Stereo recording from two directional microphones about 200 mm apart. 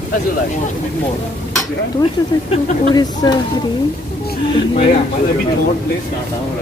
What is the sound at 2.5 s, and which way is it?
Speech, 20° left (ahead or behind).